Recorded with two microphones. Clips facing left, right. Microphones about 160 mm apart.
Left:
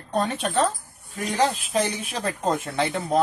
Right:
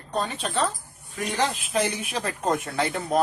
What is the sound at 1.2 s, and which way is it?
Speech, 35° left (ahead or behind).